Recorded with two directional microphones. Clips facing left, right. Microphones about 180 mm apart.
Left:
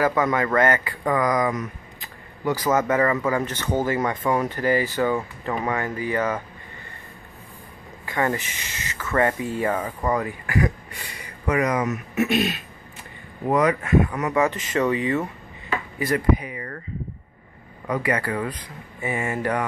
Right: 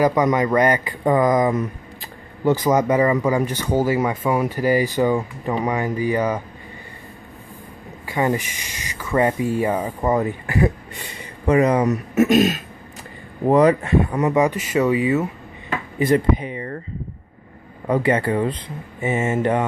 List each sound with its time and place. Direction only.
0.0 s speech: 15° right (ahead or behind)
8.1 s speech: 15° right (ahead or behind); by 12.6 s 45° right (ahead or behind)
13.5 s speech: 30° right (ahead or behind)
14.4 s speech: 10° right (ahead or behind)
16.0 s speech: 25° right (ahead or behind)
17.8 s speech: 30° right (ahead or behind)